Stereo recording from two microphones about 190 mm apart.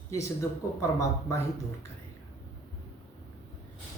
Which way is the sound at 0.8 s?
15° left (ahead or behind).